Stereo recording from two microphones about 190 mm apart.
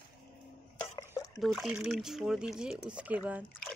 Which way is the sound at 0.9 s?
20° left (ahead or behind).